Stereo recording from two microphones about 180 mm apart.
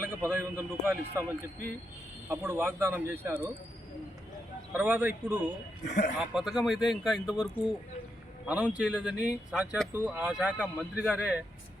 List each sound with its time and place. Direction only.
0.0 s a man's voice: 10° right (ahead or behind)
2.3 s a man's voice: 10° right (ahead or behind)
4.7 s a man's voice: 10° right (ahead or behind)
5.8 s speech: 75° left (ahead or behind)
6.1 s a man's voice: centre (ahead or behind)